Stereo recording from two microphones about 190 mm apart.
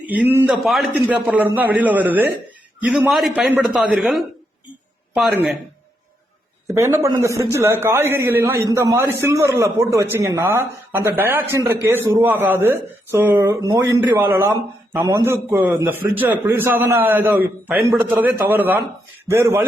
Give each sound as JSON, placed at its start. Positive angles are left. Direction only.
{"t": 0.0, "sound": "a man's voice", "side_deg": -10}
{"t": 6.7, "sound": "speech", "side_deg": -15}